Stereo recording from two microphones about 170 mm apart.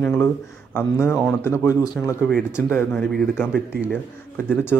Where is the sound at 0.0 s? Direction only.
5° left (ahead or behind).